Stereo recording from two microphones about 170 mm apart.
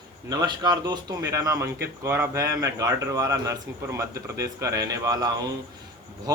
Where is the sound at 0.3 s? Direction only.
25° right (ahead or behind).